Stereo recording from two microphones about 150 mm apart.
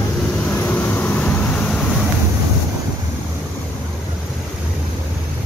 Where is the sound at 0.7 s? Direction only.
10° left (ahead or behind).